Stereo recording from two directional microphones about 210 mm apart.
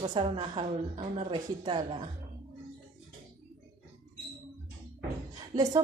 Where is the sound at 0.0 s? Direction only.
25° right (ahead or behind).